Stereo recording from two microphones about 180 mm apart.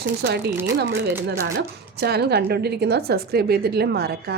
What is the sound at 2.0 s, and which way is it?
A woman's voice, 65° right (ahead or behind).